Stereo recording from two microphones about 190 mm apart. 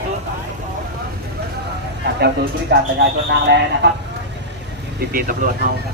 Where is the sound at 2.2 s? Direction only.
60° right (ahead or behind).